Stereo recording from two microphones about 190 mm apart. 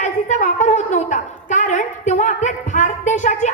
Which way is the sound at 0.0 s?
40° left (ahead or behind).